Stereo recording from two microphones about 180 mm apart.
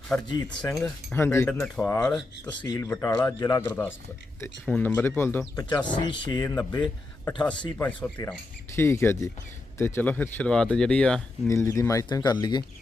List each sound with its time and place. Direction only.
0.3 s speech: 25° left (ahead or behind); by 2.6 s 5° left (ahead or behind)
2.6 s speech: 15° left (ahead or behind)
4.6 s speech: 5° left (ahead or behind)
5.6 s speech: 25° left (ahead or behind)
6.4 s speech: 15° left (ahead or behind)
7.8 s speech: 10° left (ahead or behind)
11.4 s speech: 15° left (ahead or behind)